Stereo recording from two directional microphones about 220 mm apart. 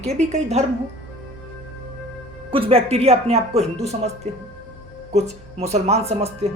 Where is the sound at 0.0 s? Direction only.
30° right (ahead or behind).